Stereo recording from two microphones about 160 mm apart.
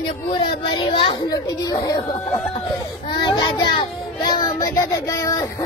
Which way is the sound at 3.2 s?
25° left (ahead or behind).